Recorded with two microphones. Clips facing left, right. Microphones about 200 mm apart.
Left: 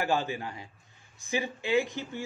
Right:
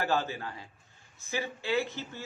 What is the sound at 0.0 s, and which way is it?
Speech, 15° left (ahead or behind).